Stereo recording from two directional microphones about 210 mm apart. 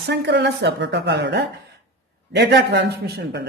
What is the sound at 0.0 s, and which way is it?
A man's voice, 55° right (ahead or behind).